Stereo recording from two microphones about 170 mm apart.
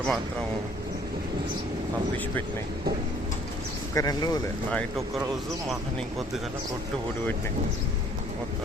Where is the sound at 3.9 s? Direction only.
20° left (ahead or behind).